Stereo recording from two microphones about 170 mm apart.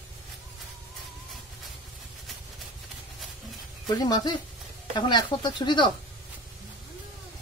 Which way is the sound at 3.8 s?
20° left (ahead or behind).